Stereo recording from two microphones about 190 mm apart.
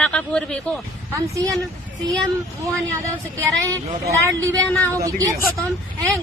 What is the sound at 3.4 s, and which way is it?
Speech, 15° right (ahead or behind).